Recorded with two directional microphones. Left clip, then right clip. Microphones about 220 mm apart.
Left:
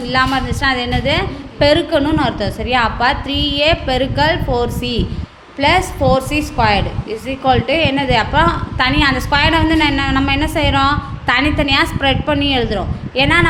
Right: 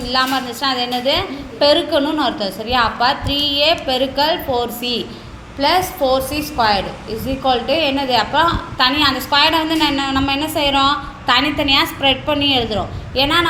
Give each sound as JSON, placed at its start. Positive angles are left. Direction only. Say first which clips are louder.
{"t": 0.1, "sound": "a woman's voice", "louder": "left 2 dB", "side_deg": 30}